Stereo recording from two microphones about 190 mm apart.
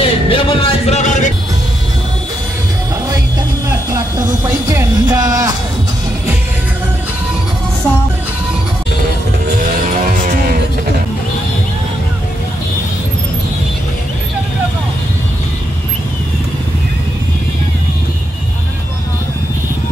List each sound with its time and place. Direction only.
0.0 s music: 30° left (ahead or behind)
4.6 s music: 15° right (ahead or behind)